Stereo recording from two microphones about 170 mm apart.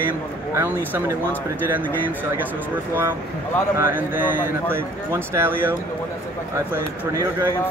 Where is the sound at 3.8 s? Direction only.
55° left (ahead or behind).